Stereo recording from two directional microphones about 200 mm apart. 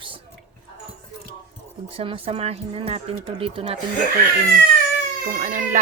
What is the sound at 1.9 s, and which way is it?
Speech, 25° right (ahead or behind).